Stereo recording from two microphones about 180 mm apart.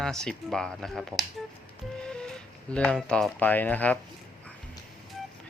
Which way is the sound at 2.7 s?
5° left (ahead or behind).